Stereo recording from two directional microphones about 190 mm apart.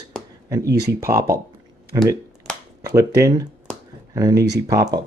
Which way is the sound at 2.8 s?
15° right (ahead or behind).